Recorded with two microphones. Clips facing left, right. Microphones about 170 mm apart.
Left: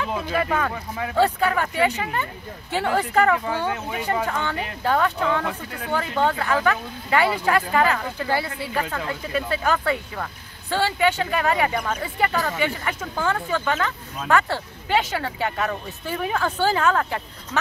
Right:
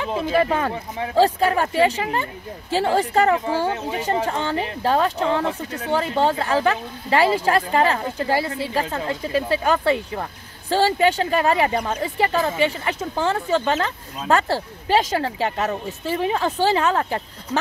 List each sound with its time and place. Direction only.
0.0 s speech: 25° right (ahead or behind)
10.7 s speech: 40° right (ahead or behind)
12.4 s speech: 20° right (ahead or behind); by 15.5 s 35° right (ahead or behind)
15.5 s speech: 25° right (ahead or behind)